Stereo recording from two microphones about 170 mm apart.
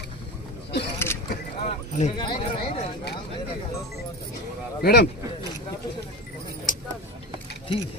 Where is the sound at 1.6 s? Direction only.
40° left (ahead or behind).